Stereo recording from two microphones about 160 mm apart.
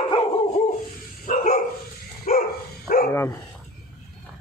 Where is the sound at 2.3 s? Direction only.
60° left (ahead or behind).